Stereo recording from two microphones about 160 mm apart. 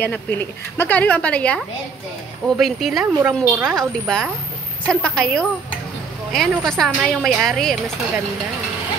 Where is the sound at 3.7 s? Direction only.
5° left (ahead or behind).